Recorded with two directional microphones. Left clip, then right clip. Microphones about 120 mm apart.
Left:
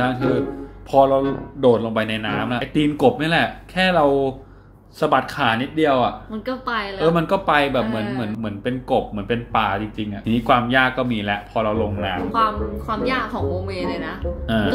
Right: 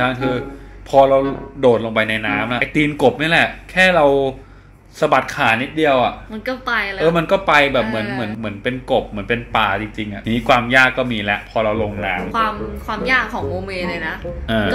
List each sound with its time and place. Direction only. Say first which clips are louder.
0.0 s speech: right 1 dB; 5° right (ahead or behind)
6.3 s a woman's voice: right 4 dB; 25° left (ahead or behind)
7.0 s speech: right 2 dB; 10° right (ahead or behind)
12.3 s a woman's voice: even; 20° left (ahead or behind)
14.5 s a sound: right 3 dB; 25° right (ahead or behind)